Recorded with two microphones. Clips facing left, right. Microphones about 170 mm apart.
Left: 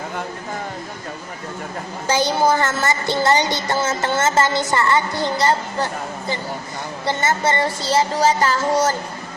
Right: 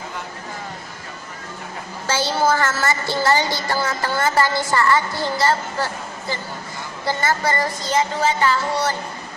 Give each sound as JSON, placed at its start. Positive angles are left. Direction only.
{"t": 2.0, "sound": "a woman's voice", "side_deg": 15}